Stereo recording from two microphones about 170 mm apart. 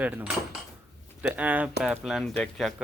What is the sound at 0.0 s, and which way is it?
Speech, 10° right (ahead or behind).